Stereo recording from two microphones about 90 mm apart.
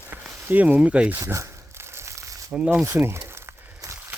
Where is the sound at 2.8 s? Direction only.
30° right (ahead or behind).